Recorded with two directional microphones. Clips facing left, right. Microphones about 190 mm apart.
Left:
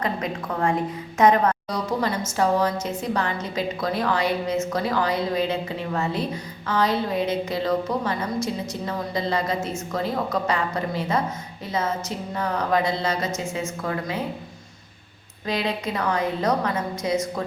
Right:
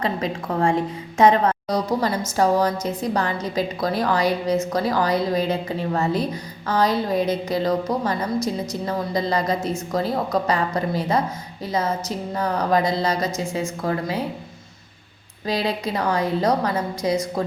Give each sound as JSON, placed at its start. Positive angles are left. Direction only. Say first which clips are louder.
{"t": 0.0, "sound": "a woman's voice", "louder": "right 2 dB", "side_deg": -30}
{"t": 15.4, "sound": "a woman's voice", "louder": "right 2 dB", "side_deg": -35}